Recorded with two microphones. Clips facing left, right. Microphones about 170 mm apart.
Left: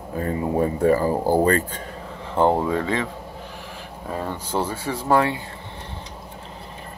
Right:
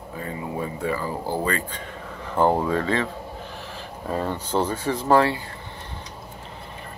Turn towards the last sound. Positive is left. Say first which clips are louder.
# right 1 dB
turn(degrees=10)  # may be behind; listen again after turning